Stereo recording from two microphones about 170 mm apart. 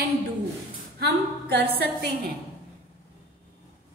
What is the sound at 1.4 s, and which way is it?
Speech, 70° right (ahead or behind).